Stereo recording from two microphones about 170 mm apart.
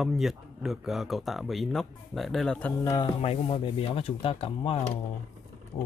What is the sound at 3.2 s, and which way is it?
Speech, 35° left (ahead or behind).